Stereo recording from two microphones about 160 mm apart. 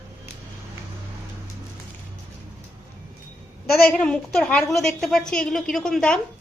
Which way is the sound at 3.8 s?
5° left (ahead or behind).